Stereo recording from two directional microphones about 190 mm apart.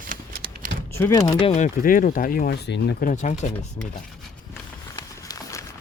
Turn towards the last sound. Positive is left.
turn(degrees=15)  # may be behind; listen again after turning